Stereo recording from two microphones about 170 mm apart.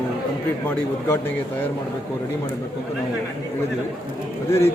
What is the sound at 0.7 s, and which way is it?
Speech, 15° left (ahead or behind).